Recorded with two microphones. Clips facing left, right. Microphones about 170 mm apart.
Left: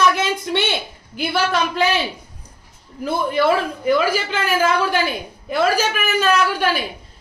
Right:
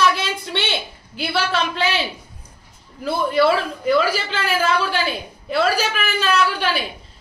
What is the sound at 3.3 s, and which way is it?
A woman's voice, 15° left (ahead or behind).